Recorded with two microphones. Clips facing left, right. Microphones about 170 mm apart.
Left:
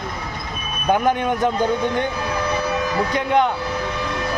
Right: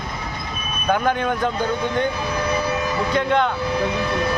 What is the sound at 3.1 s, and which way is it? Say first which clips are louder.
Speech: left 1 dB; 15° left (ahead or behind).